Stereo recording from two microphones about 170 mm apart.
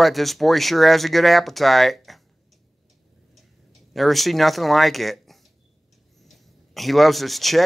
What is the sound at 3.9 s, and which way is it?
Speech, centre (ahead or behind).